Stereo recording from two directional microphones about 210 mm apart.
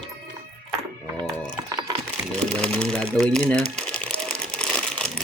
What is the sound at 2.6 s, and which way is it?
Crumpling, 5° left (ahead or behind).